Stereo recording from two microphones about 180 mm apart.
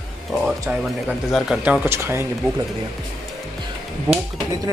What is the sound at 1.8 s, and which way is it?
Speech, 15° right (ahead or behind).